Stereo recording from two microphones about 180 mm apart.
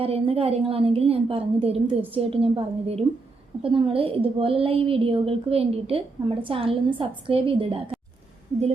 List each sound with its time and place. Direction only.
0.0 s a woman's voice: 30° right (ahead or behind)